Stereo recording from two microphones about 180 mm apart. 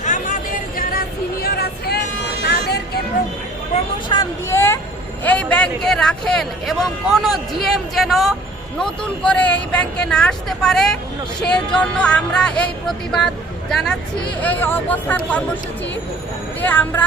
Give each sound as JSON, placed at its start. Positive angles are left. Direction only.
{"t": 0.0, "sound": "a sound", "side_deg": 45}
{"t": 0.8, "sound": "music", "side_deg": 55}
{"t": 2.4, "sound": "vehicle", "side_deg": 65}
{"t": 4.1, "sound": "a man's voice", "side_deg": 15}
{"t": 16.6, "sound": "speech", "side_deg": 10}